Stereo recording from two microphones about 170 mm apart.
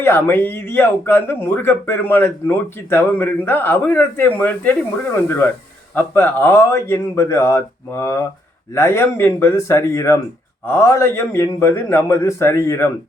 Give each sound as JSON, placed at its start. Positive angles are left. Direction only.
{"t": 0.0, "sound": "speech", "side_deg": 10}